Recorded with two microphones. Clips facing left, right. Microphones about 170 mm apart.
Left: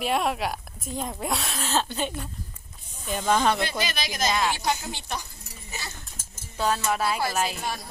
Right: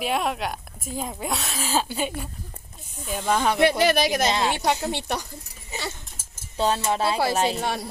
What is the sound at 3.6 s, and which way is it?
Speech, 65° right (ahead or behind).